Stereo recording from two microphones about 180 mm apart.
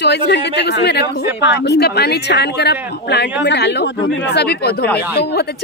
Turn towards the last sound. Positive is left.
turn(degrees=65)  # may be behind; listen again after turning